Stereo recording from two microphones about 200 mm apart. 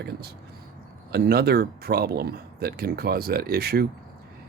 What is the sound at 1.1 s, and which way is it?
Speech, 50° right (ahead or behind).